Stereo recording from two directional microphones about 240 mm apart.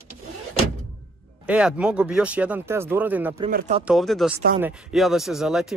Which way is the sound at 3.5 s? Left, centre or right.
Right.